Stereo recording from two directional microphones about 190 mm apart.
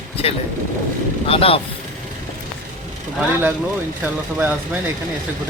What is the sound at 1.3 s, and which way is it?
Speech, 30° left (ahead or behind).